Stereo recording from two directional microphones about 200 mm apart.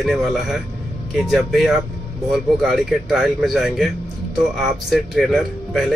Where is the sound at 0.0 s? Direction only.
Centre (ahead or behind).